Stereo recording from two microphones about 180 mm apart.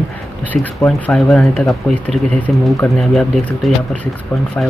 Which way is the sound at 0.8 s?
5° left (ahead or behind).